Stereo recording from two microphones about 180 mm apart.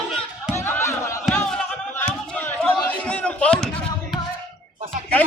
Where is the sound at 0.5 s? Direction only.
15° left (ahead or behind).